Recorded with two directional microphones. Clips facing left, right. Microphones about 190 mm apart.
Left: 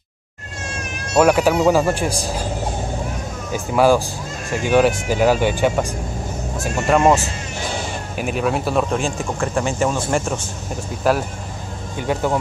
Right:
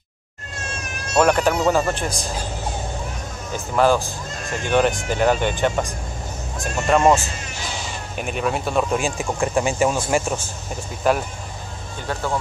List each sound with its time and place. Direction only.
1.1 s speech: 5° left (ahead or behind)
3.5 s speech: 10° left (ahead or behind)
7.5 s a sound: 55° left (ahead or behind)
8.2 s speech: 5° left (ahead or behind)
12.0 s speech: 15° left (ahead or behind)